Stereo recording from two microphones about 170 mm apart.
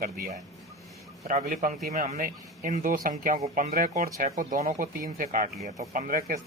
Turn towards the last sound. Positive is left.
turn(degrees=-55)  # may be behind; listen again after turning